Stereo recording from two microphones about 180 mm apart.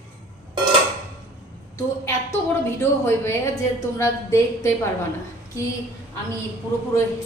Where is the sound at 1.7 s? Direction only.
15° left (ahead or behind).